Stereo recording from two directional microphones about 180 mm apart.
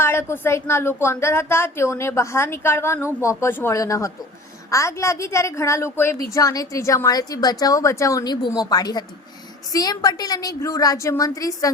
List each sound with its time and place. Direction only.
0.0 s a woman's voice: 15° left (ahead or behind)